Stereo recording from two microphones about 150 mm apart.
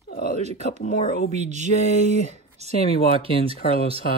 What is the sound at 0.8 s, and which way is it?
Speech, 60° left (ahead or behind).